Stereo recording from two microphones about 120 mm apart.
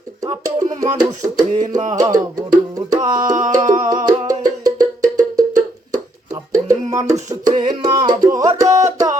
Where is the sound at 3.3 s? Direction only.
90° right.